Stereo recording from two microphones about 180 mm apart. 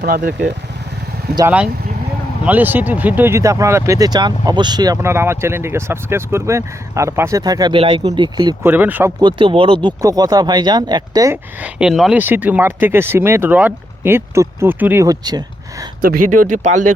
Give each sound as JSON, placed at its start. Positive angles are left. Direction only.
{"t": 0.0, "sound": "speech", "side_deg": -55}
{"t": 1.5, "sound": "speech", "side_deg": -5}
{"t": 8.6, "sound": "speech", "side_deg": -10}
{"t": 9.2, "sound": "speech", "side_deg": -30}
{"t": 11.6, "sound": "speech", "side_deg": -5}
{"t": 16.0, "sound": "speech", "side_deg": -50}